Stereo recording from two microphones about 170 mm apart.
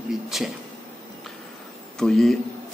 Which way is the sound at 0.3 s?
Centre (ahead or behind).